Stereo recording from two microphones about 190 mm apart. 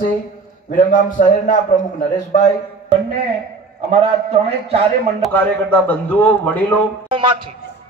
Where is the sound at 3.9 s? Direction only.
30° right (ahead or behind).